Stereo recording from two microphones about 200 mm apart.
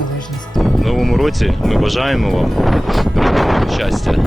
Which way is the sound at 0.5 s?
Centre (ahead or behind).